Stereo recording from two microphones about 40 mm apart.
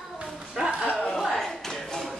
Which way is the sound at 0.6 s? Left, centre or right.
Centre.